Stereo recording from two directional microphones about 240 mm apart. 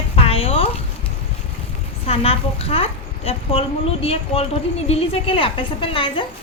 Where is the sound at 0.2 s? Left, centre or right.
Left.